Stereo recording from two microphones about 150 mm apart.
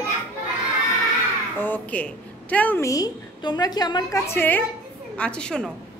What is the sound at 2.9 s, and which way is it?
A woman's voice, 25° left (ahead or behind).